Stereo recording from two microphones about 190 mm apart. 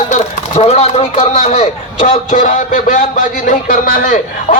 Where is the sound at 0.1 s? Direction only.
35° left (ahead or behind).